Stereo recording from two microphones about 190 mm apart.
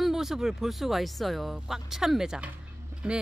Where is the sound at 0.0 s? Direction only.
Centre (ahead or behind).